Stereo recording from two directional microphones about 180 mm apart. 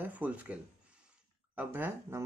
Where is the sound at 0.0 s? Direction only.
10° right (ahead or behind).